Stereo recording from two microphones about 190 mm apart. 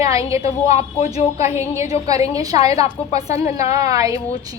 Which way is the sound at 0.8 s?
35° left (ahead or behind).